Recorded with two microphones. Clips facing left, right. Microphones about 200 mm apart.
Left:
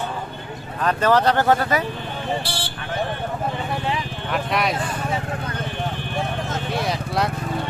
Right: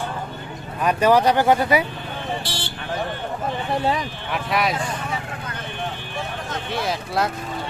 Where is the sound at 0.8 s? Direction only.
10° right (ahead or behind).